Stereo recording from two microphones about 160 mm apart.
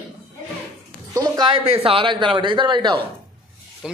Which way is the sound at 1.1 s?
25° right (ahead or behind).